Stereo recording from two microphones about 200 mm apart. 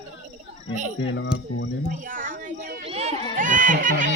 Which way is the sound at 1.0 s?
70° left (ahead or behind).